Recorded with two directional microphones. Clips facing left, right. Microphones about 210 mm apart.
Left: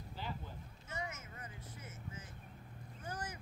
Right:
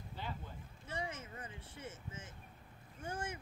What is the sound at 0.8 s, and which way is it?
Vehicle, 30° right (ahead or behind).